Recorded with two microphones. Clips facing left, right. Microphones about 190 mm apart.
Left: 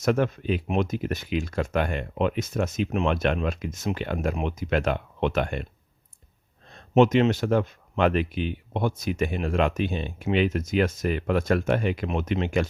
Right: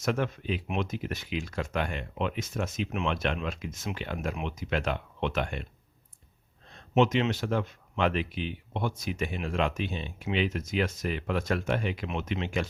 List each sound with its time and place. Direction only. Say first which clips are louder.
0.0 s speech: left 6 dB; 45° left (ahead or behind)
6.9 s speech: left 6 dB; 45° left (ahead or behind)